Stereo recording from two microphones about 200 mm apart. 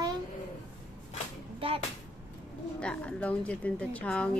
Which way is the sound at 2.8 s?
5° left (ahead or behind).